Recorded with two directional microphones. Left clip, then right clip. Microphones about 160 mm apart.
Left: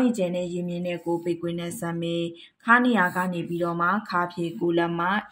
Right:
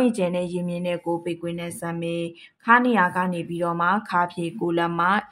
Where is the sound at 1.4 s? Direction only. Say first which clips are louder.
Even; 10° right (ahead or behind).